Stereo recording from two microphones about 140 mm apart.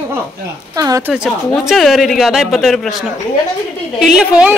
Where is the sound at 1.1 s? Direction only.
5° right (ahead or behind).